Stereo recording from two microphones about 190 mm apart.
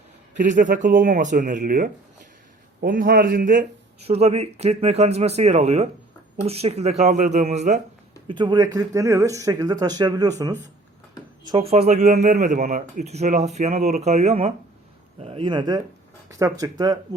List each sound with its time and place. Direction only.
0.3 s speech: 45° right (ahead or behind)
4.0 s speech: 30° right (ahead or behind)
8.3 s speech: 25° right (ahead or behind)
11.5 s speech: 35° right (ahead or behind)